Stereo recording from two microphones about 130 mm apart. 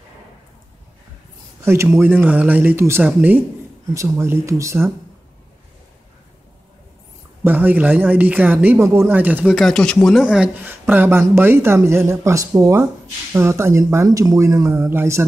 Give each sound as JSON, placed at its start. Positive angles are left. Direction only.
{"t": 1.6, "sound": "speech", "side_deg": -20}
{"t": 3.9, "sound": "speech", "side_deg": -25}
{"t": 7.4, "sound": "speech", "side_deg": -15}